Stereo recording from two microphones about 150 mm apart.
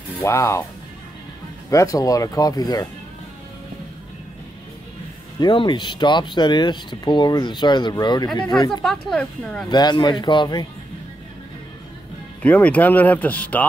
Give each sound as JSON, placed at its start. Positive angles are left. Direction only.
{"t": 0.2, "sound": "speech", "side_deg": 20}
{"t": 1.7, "sound": "speech", "side_deg": 20}
{"t": 5.4, "sound": "speech", "side_deg": 30}
{"t": 8.8, "sound": "speech", "side_deg": 5}
{"t": 9.7, "sound": "speech", "side_deg": 30}
{"t": 12.4, "sound": "speech", "side_deg": 10}